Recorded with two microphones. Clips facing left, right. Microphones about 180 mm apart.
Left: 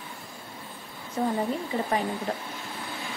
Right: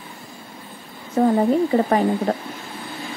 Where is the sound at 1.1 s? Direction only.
60° right (ahead or behind).